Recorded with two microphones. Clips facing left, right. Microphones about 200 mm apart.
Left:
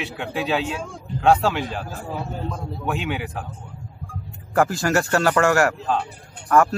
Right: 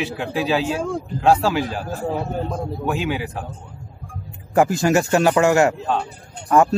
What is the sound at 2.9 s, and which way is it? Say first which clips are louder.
Speech: right 2 dB; centre (ahead or behind).